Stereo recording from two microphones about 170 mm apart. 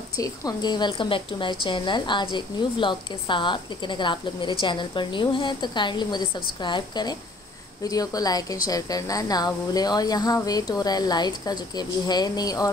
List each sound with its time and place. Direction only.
0.2 s a woman's voice: 20° left (ahead or behind)